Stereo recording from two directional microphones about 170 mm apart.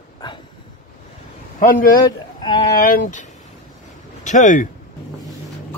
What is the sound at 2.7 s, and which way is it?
Speech, 55° left (ahead or behind).